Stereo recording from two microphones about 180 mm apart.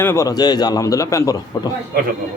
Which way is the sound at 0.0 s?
15° left (ahead or behind).